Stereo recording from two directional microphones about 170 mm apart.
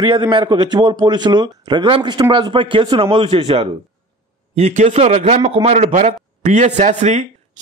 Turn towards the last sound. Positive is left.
turn(degrees=-45)  # may be behind; listen again after turning